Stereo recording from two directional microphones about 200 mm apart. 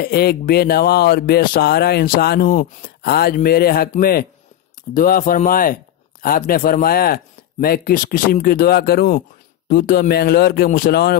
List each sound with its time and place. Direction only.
0.0 s speech: 50° left (ahead or behind)